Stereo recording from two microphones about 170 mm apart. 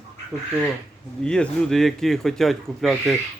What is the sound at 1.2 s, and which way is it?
Speech, 5° left (ahead or behind).